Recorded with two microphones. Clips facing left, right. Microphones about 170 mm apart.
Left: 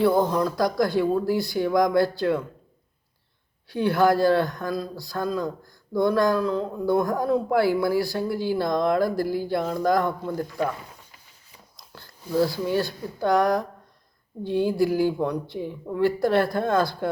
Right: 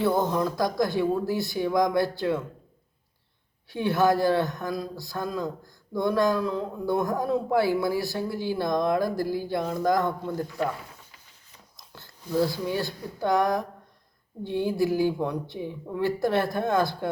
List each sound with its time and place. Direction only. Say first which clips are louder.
0.3 s speech: left 2 dB; 20° right (ahead or behind)
3.7 s speech: left 2 dB; 20° right (ahead or behind)
12.4 s speech: left 3 dB; 20° right (ahead or behind)